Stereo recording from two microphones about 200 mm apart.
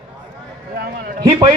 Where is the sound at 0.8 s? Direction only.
50° right (ahead or behind).